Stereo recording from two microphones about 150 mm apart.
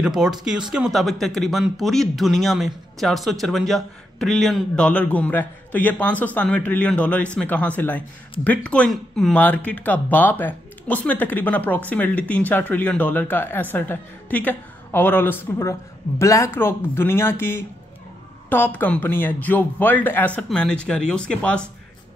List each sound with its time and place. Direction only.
0.0 s a man's voice: 5° right (ahead or behind)